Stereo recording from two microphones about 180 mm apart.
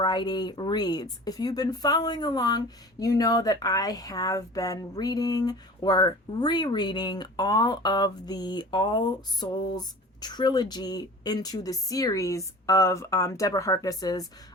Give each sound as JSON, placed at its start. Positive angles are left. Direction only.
{"t": 0.0, "sound": "speech", "side_deg": 25}